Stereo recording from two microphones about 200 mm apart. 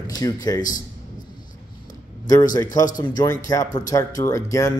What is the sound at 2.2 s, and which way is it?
Speech, 20° left (ahead or behind).